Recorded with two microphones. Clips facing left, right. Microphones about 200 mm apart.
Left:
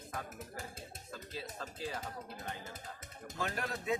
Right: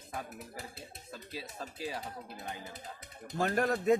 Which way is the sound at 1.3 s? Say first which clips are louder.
Right 2 dB; 10° right (ahead or behind).